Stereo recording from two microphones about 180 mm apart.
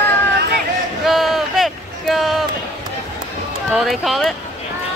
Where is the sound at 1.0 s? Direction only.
Centre (ahead or behind).